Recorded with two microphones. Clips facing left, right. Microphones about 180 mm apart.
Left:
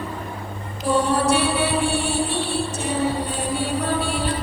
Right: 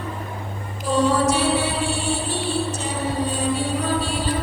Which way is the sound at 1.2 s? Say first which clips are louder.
Even; 60° left (ahead or behind).